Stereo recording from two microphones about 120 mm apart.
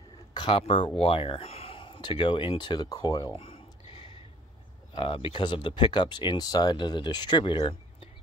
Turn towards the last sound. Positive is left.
turn(degrees=45)  # may be behind; listen again after turning